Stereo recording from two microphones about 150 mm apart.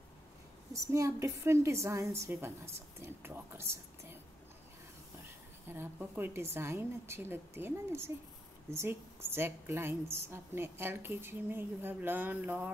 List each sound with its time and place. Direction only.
0.9 s a woman's voice: 20° right (ahead or behind)
5.7 s a woman's voice: 15° right (ahead or behind)